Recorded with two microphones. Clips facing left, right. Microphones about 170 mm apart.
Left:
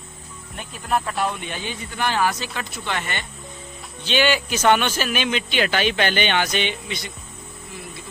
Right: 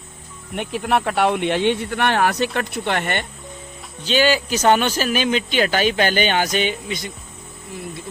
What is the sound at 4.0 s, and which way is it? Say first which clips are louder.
Speech: right 3 dB; 40° right (ahead or behind).